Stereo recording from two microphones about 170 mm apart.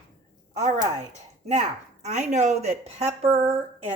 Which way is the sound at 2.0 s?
45° right (ahead or behind).